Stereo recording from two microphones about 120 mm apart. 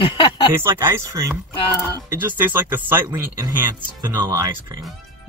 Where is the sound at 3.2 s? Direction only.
30° right (ahead or behind).